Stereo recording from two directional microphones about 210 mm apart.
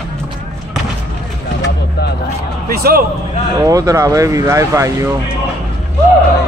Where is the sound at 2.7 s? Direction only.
45° right (ahead or behind).